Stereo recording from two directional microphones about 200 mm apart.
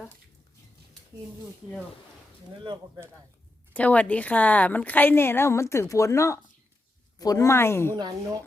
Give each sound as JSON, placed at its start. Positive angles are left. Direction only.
{"t": 2.5, "sound": "speech", "side_deg": -25}
{"t": 3.7, "sound": "a woman's voice", "side_deg": 5}
{"t": 7.9, "sound": "speech", "side_deg": -20}